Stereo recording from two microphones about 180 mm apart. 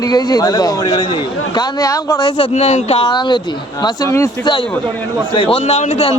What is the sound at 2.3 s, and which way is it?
A man's voice, 30° left (ahead or behind).